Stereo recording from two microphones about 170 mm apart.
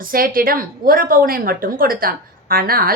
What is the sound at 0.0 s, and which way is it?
Speech, 60° right (ahead or behind).